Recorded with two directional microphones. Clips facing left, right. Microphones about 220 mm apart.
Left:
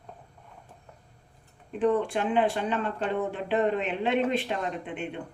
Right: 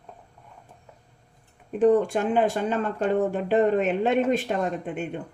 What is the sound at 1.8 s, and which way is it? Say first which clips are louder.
Speech: right 5 dB; 45° right (ahead or behind).